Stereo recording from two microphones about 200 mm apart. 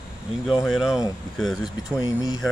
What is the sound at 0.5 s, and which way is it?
Speech, 5° right (ahead or behind).